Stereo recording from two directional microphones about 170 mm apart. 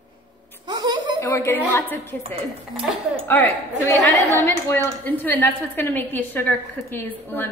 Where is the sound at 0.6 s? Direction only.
25° right (ahead or behind).